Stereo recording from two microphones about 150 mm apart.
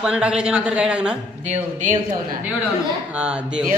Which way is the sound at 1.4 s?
50° right (ahead or behind).